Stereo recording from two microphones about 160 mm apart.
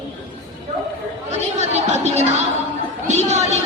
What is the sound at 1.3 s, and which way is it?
Chatter, 45° right (ahead or behind).